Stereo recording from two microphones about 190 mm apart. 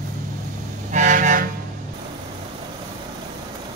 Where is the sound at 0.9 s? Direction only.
40° right (ahead or behind).